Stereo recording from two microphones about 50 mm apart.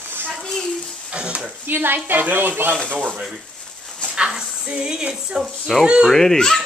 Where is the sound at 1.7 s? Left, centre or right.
Right.